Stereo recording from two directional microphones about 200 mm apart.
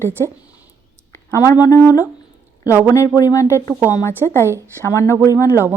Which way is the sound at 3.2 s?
20° left (ahead or behind).